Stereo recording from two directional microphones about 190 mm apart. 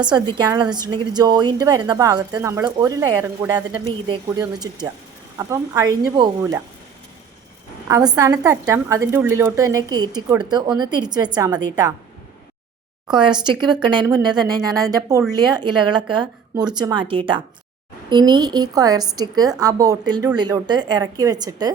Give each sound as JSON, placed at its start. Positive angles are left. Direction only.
{"t": 0.0, "sound": "a woman's voice", "side_deg": -25}
{"t": 7.9, "sound": "a woman's voice", "side_deg": -20}
{"t": 13.1, "sound": "a woman's voice", "side_deg": -25}